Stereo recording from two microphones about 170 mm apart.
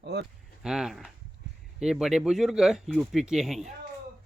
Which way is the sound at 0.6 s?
5° right (ahead or behind).